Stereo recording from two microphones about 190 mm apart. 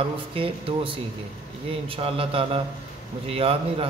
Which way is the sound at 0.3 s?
30° right (ahead or behind).